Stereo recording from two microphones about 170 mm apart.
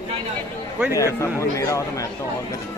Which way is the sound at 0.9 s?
15° left (ahead or behind).